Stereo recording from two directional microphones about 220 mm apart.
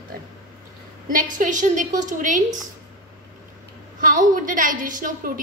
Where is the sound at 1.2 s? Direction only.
35° right (ahead or behind).